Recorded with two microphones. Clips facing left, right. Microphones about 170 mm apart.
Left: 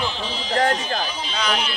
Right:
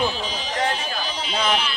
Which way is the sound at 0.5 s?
45° left (ahead or behind).